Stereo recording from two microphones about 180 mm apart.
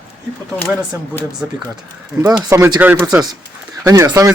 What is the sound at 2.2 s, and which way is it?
A man's voice, 15° right (ahead or behind).